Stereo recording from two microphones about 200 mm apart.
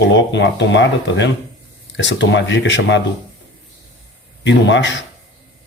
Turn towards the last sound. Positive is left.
turn(degrees=65)  # may be behind; listen again after turning